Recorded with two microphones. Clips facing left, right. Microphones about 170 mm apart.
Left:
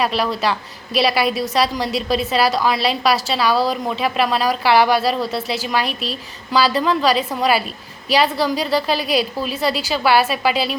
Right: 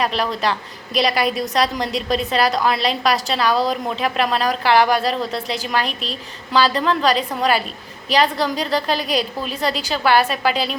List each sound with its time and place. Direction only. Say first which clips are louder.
0.0 s a woman's voice: left 1 dB; 5° left (ahead or behind)